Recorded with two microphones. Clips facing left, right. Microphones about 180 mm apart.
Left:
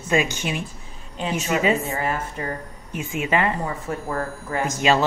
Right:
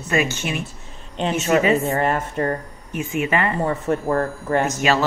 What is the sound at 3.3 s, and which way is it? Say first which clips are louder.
Speech: left 2 dB; 15° left (ahead or behind).